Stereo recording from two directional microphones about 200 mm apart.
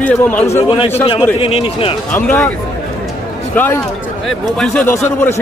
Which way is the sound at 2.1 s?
10° left (ahead or behind).